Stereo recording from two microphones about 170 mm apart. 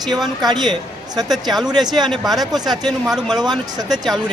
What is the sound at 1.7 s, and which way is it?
Speech, 25° right (ahead or behind).